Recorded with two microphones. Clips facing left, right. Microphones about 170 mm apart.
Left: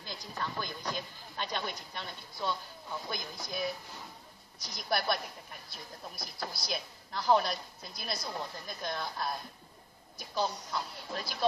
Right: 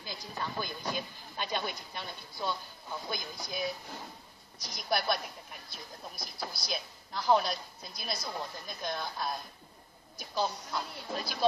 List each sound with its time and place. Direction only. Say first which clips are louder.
0.0 s speech: even; 5° right (ahead or behind)